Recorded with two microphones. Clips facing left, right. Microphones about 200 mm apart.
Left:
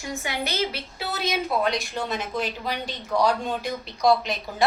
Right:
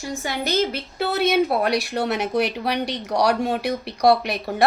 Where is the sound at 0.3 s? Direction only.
45° right (ahead or behind).